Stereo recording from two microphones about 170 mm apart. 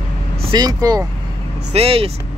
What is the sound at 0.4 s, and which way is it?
Speech, 25° right (ahead or behind).